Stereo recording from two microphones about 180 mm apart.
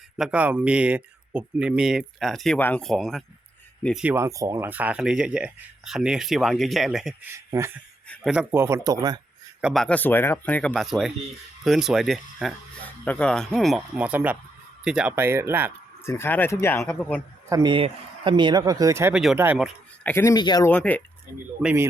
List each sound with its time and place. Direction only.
0.2 s speech: 5° right (ahead or behind)
4.1 s speech: 15° right (ahead or behind)
8.0 s a sound: 5° left (ahead or behind)
8.3 s speech: 10° right (ahead or behind)
9.6 s speech: centre (ahead or behind)
16.0 s speech: 15° left (ahead or behind)
17.5 s speech: 25° right (ahead or behind)
19.1 s speech: 5° right (ahead or behind)
20.1 s speech: 15° left (ahead or behind)
20.7 s speech: 10° left (ahead or behind)
21.6 s speech: 5° right (ahead or behind)